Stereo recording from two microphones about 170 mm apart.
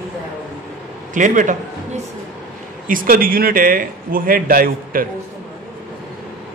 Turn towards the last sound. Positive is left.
turn(degrees=-55)  # may be behind; listen again after turning